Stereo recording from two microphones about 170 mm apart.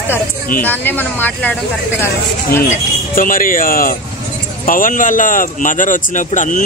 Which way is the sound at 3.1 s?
55° left (ahead or behind).